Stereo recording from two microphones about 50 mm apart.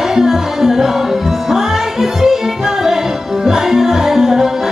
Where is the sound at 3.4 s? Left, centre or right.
Centre.